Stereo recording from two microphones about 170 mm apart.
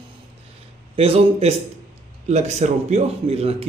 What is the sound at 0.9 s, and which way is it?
A man's voice, 35° right (ahead or behind).